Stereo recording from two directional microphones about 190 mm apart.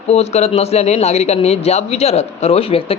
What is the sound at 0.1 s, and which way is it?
A man's voice, 35° left (ahead or behind).